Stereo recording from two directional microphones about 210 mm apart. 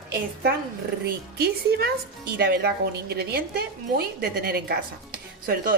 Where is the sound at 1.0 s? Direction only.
50° right (ahead or behind).